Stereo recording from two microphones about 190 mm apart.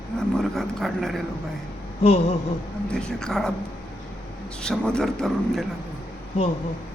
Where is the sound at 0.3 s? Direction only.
Centre (ahead or behind).